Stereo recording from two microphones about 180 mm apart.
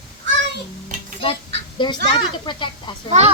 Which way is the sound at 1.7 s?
25° left (ahead or behind).